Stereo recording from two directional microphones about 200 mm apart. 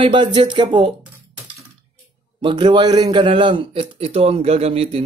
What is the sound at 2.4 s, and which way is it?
A man's voice, 25° right (ahead or behind).